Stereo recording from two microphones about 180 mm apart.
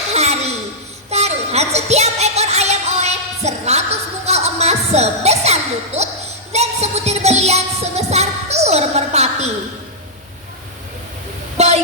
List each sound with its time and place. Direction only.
0.1 s a sound: 35° right (ahead or behind)
1.1 s music: 35° right (ahead or behind)
11.5 s vehicle: 35° right (ahead or behind)